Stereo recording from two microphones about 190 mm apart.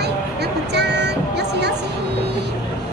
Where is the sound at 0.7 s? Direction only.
60° right (ahead or behind).